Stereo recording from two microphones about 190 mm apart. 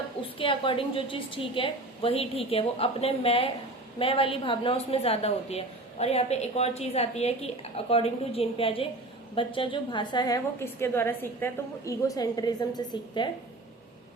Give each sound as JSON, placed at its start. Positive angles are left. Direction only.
{"t": 0.2, "sound": "a woman's voice", "side_deg": 30}